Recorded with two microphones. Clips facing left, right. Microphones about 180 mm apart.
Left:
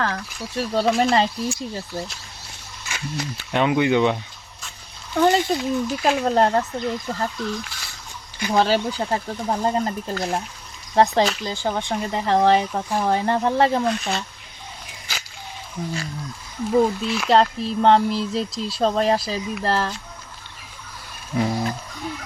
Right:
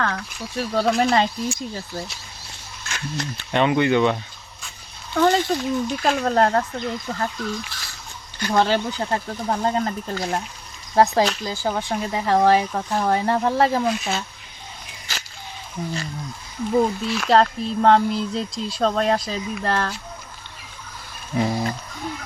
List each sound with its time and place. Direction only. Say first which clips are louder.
0.0 s speech: even; 5° left (ahead or behind)
2.9 s speech: even; 5° left (ahead or behind)
12.9 s speech: even; 10° left (ahead or behind)
13.1 s speech: even; centre (ahead or behind)
15.8 s speech: even; 10° right (ahead or behind)
17.1 s speech: even; centre (ahead or behind)
19.6 s speech: left 1 dB; 30° left (ahead or behind)
21.3 s a sound: even; centre (ahead or behind)